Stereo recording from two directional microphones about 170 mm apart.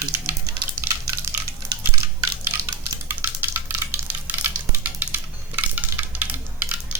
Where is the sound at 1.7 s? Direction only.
20° right (ahead or behind).